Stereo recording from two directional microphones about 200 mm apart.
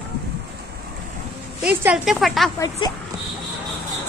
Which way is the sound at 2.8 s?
25° left (ahead or behind).